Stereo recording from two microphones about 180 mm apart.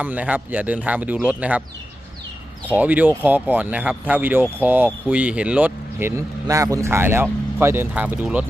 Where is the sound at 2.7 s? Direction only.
10° right (ahead or behind).